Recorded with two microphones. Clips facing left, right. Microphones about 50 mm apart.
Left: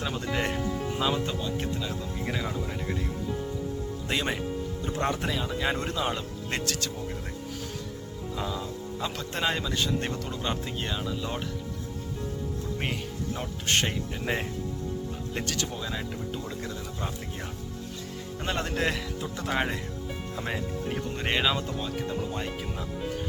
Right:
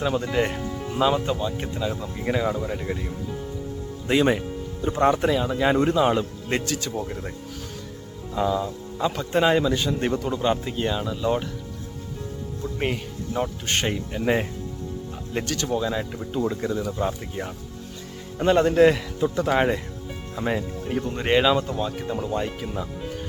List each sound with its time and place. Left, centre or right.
0.0 s speech: centre
0.9 s speech: centre
4.1 s speech: centre
6.6 s speech: centre
8.4 s speech: centre
13.7 s speech: centre
18.3 s speech: centre